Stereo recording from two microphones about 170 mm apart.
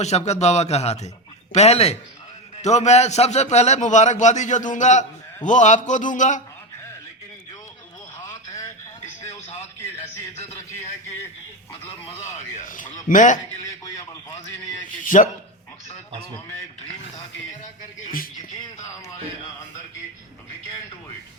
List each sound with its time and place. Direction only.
0.0 s a man's voice: 40° left (ahead or behind)
8.2 s radio: 15° left (ahead or behind)
12.4 s a sound: 45° left (ahead or behind)
13.1 s a man's voice: 50° left (ahead or behind)
13.8 s radio: 20° left (ahead or behind)
14.8 s a sound: 50° left (ahead or behind)